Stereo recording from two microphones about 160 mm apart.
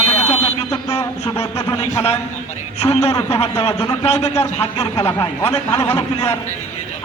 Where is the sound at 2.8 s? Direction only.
40° left (ahead or behind).